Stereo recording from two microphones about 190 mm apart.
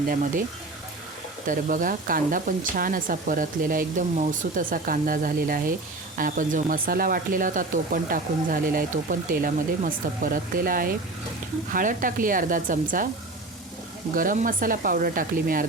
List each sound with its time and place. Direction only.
0.1 s speech: 45° right (ahead or behind)
1.5 s speech: 45° right (ahead or behind)
14.2 s speech: 45° right (ahead or behind)